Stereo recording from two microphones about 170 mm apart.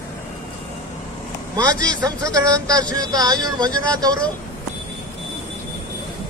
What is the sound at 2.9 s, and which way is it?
Speech, 20° right (ahead or behind).